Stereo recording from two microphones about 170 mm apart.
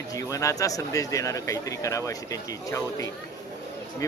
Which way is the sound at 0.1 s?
20° left (ahead or behind).